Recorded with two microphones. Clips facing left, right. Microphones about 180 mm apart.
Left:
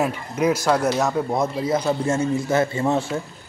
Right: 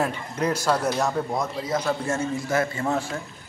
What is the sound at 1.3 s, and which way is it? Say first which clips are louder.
A man's voice: left 5 dB; 25° left (ahead or behind).